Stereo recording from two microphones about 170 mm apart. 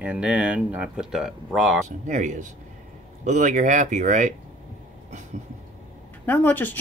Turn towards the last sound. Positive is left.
turn(degrees=10)  # may be behind; listen again after turning